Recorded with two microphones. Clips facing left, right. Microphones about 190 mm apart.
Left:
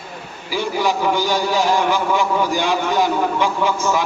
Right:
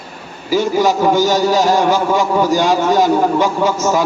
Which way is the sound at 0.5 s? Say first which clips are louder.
Right 6 dB; 45° right (ahead or behind).